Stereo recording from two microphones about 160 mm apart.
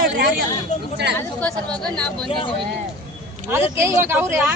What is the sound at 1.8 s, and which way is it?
Speech, 5° left (ahead or behind).